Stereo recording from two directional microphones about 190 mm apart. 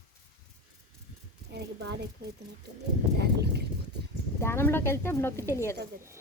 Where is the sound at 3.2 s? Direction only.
60° right (ahead or behind).